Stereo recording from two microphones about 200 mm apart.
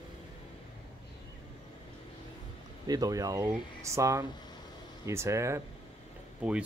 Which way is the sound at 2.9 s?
20° right (ahead or behind).